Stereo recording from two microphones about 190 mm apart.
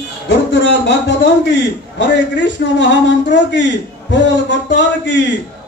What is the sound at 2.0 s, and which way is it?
A man's voice, 70° left (ahead or behind).